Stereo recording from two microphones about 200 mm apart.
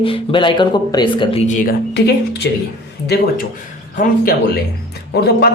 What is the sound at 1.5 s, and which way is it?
Speech, 40° left (ahead or behind).